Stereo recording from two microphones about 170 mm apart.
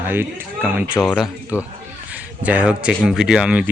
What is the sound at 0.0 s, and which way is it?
Speech, 10° right (ahead or behind).